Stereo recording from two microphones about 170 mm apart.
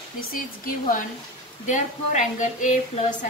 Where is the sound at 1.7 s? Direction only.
45° left (ahead or behind).